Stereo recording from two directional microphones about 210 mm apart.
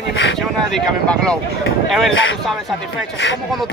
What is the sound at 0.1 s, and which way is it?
Speech, 60° left (ahead or behind).